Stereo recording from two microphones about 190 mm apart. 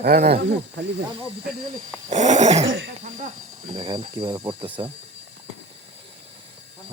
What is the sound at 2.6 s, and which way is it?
Speech, 85° right.